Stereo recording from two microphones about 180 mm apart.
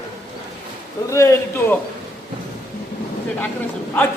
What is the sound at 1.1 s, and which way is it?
Speech, 15° left (ahead or behind).